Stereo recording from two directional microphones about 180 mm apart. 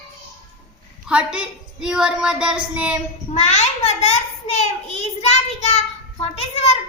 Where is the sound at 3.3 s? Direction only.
35° left (ahead or behind).